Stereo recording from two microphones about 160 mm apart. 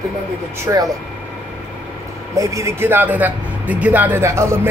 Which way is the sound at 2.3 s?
20° right (ahead or behind).